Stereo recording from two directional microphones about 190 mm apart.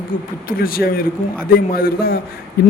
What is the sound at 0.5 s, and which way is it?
A man's voice, 50° left (ahead or behind).